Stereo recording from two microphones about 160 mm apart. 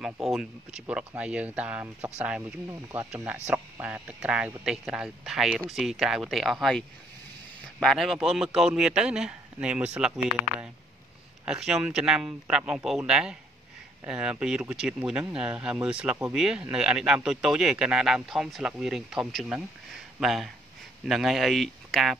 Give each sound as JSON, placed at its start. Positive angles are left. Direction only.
{"t": 0.0, "sound": "speech", "side_deg": 0}
{"t": 2.7, "sound": "speech", "side_deg": -15}
{"t": 7.8, "sound": "speech", "side_deg": 0}